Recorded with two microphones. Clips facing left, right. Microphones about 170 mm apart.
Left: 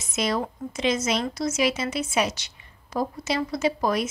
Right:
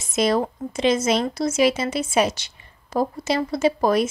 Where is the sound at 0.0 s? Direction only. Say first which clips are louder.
Right 6 dB; 30° right (ahead or behind).